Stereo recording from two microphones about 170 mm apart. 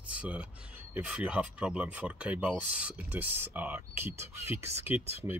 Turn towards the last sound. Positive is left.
turn(degrees=-15)  # may be behind; listen again after turning